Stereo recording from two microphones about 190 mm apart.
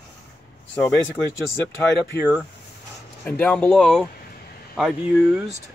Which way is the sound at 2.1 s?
15° left (ahead or behind).